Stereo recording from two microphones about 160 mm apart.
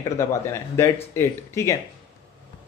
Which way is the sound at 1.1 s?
15° left (ahead or behind).